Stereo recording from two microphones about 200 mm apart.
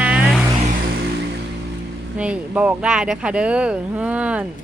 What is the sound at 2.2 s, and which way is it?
Speech, 5° right (ahead or behind).